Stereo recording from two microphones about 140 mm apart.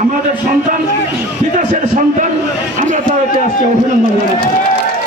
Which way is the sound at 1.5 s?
65° right (ahead or behind).